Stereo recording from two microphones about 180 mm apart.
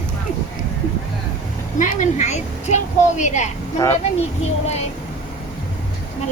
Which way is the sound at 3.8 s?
15° left (ahead or behind).